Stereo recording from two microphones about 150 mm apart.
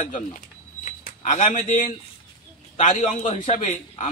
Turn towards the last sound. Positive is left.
turn(degrees=50)  # may be behind; listen again after turning